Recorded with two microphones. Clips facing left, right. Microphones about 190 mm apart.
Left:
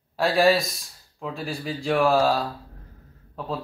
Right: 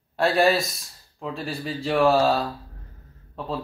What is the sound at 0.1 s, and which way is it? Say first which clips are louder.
A man's voice: even; centre (ahead or behind).